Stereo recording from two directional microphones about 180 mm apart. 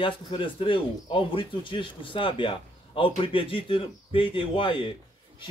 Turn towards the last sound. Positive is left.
turn(degrees=30)  # may be behind; listen again after turning